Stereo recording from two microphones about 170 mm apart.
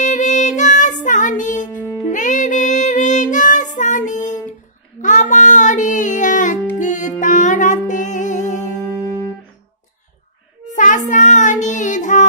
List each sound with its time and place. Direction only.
0.0 s music: 45° left (ahead or behind)
1.8 s music: 15° left (ahead or behind)
2.0 s music: 50° left (ahead or behind)
10.7 s child singing: 50° left (ahead or behind)